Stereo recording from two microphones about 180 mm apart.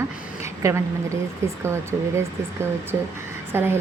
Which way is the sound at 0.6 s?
15° right (ahead or behind).